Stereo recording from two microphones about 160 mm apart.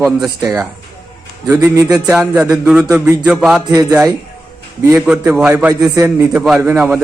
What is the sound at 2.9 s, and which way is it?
Speech, 20° right (ahead or behind).